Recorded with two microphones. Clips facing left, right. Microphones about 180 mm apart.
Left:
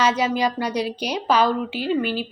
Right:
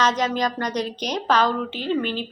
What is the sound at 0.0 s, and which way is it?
Speech, 10° left (ahead or behind).